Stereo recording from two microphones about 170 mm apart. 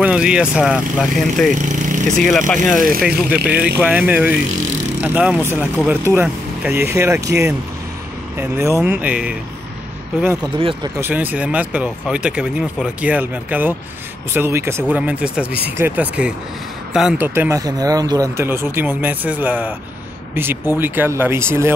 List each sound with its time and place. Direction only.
0.0 s speech: 5° right (ahead or behind)
1.5 s speech: 45° right (ahead or behind)
2.1 s speech: 5° left (ahead or behind)
2.8 s speech: 60° right (ahead or behind)
3.4 s speech: 10° right (ahead or behind)
10.4 s speech: 30° right (ahead or behind)
11.0 s speech: 10° right (ahead or behind)
17.3 s speech: 15° right (ahead or behind)